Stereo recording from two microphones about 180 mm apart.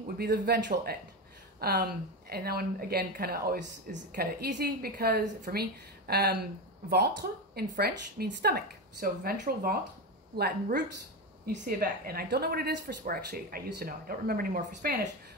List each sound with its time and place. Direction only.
0.2 s speech: 60° right (ahead or behind)